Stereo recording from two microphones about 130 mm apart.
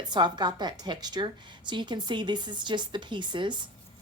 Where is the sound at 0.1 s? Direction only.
35° right (ahead or behind).